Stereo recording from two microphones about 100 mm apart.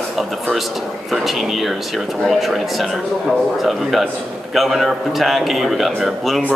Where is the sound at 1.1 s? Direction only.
Centre (ahead or behind).